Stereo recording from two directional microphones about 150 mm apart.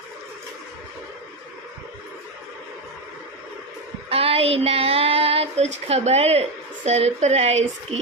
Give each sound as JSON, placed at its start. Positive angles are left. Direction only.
{"t": 4.1, "sound": "child singing", "side_deg": -40}